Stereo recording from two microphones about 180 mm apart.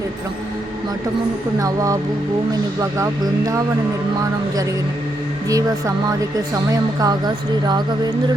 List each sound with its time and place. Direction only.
1.5 s speech: 20° right (ahead or behind)
3.0 s speech: 15° right (ahead or behind)
5.5 s speech: 20° right (ahead or behind)